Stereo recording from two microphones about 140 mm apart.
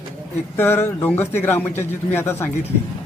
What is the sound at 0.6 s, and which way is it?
Speech, 15° left (ahead or behind).